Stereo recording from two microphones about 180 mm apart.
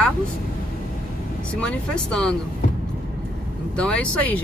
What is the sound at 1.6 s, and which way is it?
Speech, 5° left (ahead or behind).